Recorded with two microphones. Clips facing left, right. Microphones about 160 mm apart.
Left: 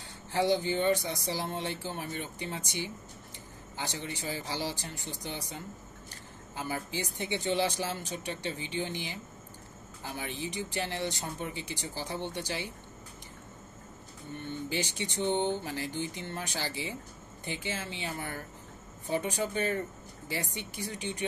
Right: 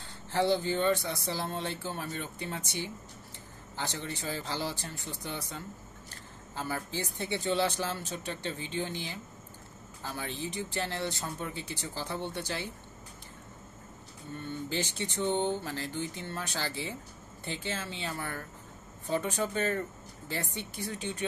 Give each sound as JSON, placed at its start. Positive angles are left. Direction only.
{"t": 0.3, "sound": "speech", "side_deg": 15}
{"t": 14.3, "sound": "speech", "side_deg": 15}